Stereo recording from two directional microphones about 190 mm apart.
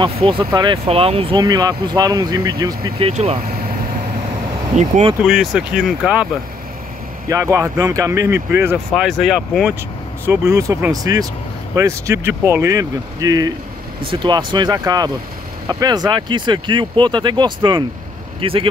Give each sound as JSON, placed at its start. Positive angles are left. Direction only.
{"t": 0.0, "sound": "speech", "side_deg": -25}
{"t": 3.1, "sound": "speech", "side_deg": -35}
{"t": 4.6, "sound": "speech", "side_deg": -35}
{"t": 5.2, "sound": "speech", "side_deg": -5}
{"t": 7.2, "sound": "speech", "side_deg": -15}
{"t": 8.9, "sound": "speech", "side_deg": 0}
{"t": 10.2, "sound": "speech", "side_deg": -15}